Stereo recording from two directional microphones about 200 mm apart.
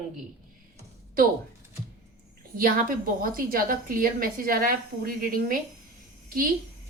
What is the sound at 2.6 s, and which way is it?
A woman's voice, 45° right (ahead or behind).